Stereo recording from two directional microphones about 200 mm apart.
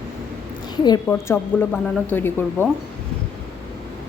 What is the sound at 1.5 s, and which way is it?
Speech, 10° left (ahead or behind).